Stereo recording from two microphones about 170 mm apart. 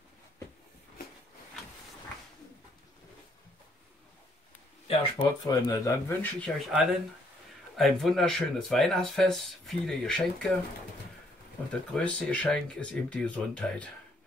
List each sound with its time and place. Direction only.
5.1 s speech: 25° left (ahead or behind)
6.7 s speech: centre (ahead or behind)
11.7 s speech: 5° left (ahead or behind)